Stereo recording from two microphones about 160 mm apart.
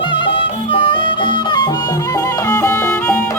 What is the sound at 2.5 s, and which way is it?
Music, 15° left (ahead or behind).